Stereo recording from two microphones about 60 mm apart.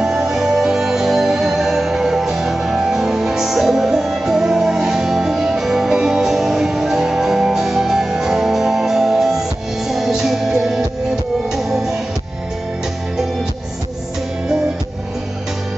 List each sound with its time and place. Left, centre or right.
0.0 s music: centre